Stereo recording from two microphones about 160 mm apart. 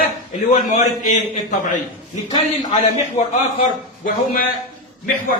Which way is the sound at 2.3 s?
30° left (ahead or behind).